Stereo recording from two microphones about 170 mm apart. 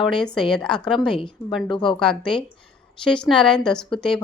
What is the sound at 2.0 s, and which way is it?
Speech, 5° left (ahead or behind).